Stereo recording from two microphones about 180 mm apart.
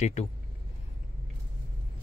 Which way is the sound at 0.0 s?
40° left (ahead or behind).